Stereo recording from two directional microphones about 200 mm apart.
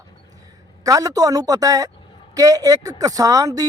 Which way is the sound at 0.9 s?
15° right (ahead or behind).